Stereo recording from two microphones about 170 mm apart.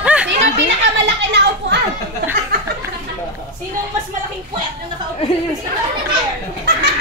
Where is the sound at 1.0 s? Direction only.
85° right.